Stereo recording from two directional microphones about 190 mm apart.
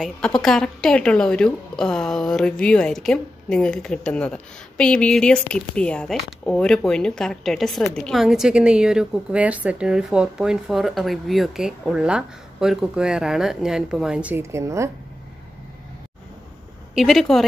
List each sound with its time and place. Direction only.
0.0 s speech: 5° left (ahead or behind); by 14.9 s 15° right (ahead or behind)
16.9 s speech: centre (ahead or behind)